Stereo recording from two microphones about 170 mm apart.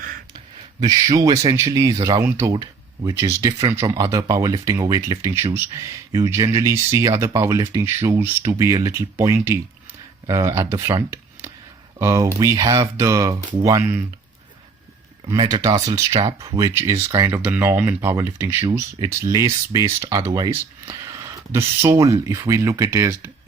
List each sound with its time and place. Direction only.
0.8 s speech: 20° right (ahead or behind)
15.3 s speech: 25° right (ahead or behind)